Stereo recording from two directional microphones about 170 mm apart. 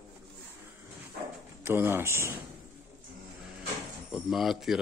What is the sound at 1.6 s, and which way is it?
Speech, 15° right (ahead or behind).